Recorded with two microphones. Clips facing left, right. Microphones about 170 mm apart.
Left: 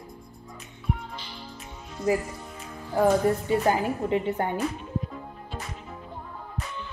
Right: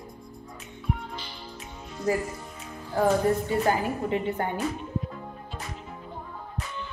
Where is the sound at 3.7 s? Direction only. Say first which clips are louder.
Left 1 dB; 25° left (ahead or behind).